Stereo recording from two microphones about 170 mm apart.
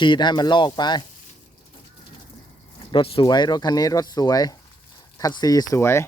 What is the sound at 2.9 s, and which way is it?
Speech, 30° left (ahead or behind).